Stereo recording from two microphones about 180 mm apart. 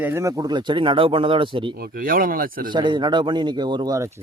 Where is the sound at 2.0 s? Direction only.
55° right (ahead or behind).